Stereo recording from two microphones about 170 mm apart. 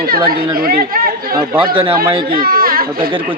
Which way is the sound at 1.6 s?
30° right (ahead or behind).